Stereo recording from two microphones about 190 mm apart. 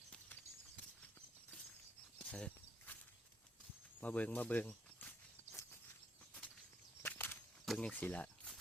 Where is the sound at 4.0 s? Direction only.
10° left (ahead or behind).